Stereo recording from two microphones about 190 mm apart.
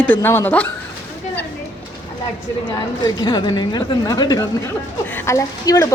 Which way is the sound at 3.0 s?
20° left (ahead or behind).